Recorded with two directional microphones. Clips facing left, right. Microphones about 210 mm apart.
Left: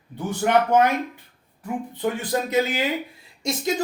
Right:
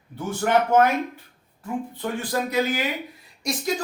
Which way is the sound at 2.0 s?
20° left (ahead or behind).